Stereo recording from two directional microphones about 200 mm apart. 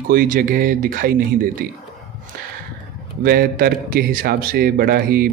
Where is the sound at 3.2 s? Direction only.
50° right (ahead or behind).